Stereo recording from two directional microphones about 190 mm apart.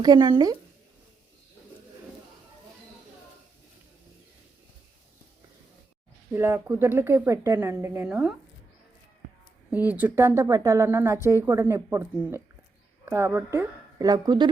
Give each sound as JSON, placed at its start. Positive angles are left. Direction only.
{"t": 0.0, "sound": "speech", "side_deg": -20}
{"t": 6.3, "sound": "speech", "side_deg": -10}
{"t": 9.6, "sound": "speech", "side_deg": -10}